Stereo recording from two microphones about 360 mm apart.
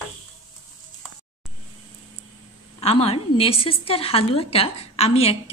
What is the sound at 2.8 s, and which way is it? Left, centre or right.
A woman's voice, centre.